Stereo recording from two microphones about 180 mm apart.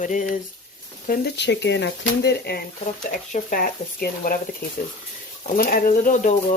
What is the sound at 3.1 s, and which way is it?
Speech, 50° left (ahead or behind).